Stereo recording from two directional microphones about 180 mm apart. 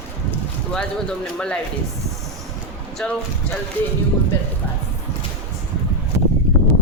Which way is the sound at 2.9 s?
Centre (ahead or behind).